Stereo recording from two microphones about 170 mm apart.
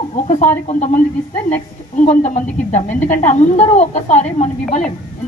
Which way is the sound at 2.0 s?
45° left (ahead or behind).